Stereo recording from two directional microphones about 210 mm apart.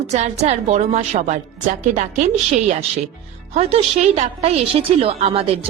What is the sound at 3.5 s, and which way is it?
A woman's voice, 30° right (ahead or behind).